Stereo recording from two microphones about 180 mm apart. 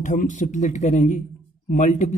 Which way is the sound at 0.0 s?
45° left (ahead or behind).